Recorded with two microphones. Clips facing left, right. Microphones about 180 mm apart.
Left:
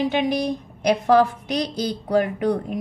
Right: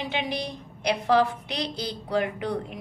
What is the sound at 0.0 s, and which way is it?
A woman's voice, 45° left (ahead or behind).